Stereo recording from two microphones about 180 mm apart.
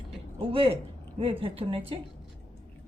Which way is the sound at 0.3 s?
30° right (ahead or behind).